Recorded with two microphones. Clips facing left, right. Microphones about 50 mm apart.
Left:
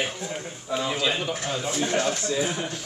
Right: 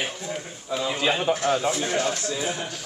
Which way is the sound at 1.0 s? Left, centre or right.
Right.